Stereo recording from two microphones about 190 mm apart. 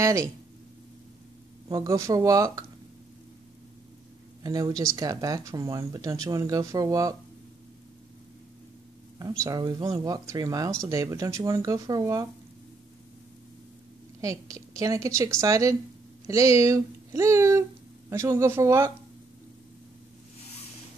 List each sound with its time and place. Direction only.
0.0 s speech: 15° right (ahead or behind)
1.7 s speech: 15° right (ahead or behind)
4.4 s speech: 20° right (ahead or behind)
9.4 s speech: 20° right (ahead or behind)
14.2 s speech: 15° right (ahead or behind)